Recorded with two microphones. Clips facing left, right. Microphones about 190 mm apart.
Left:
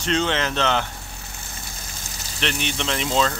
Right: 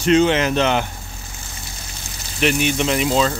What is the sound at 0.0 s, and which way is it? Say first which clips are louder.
Speech: right 8 dB; 10° right (ahead or behind).